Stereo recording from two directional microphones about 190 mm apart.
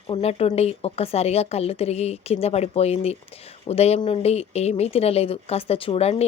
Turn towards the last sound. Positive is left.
turn(degrees=30)  # may be behind; listen again after turning